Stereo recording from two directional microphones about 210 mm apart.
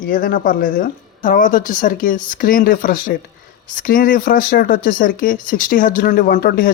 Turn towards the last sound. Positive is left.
turn(degrees=45)  # may be behind; listen again after turning